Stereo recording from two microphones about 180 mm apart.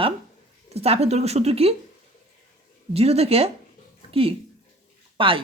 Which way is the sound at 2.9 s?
35° right (ahead or behind).